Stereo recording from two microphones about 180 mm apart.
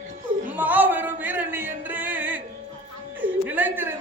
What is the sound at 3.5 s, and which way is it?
Chuckle, 10° right (ahead or behind).